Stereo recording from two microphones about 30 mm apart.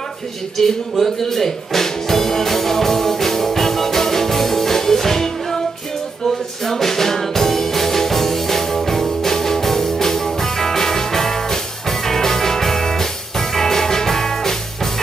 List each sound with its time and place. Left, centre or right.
0.6 s music: centre